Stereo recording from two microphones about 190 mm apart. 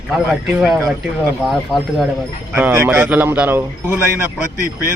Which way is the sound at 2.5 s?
10° right (ahead or behind).